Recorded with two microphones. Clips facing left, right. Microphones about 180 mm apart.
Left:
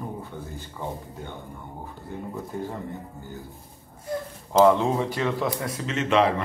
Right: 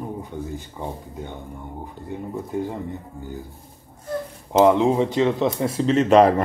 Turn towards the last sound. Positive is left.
turn(degrees=-40)  # may be behind; listen again after turning